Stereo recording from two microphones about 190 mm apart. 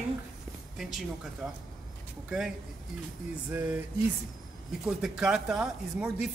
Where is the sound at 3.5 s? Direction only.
10° right (ahead or behind).